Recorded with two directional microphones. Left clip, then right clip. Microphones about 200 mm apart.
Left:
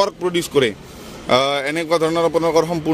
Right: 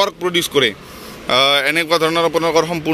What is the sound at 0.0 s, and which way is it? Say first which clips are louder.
A man's voice: right 2 dB; 15° left (ahead or behind).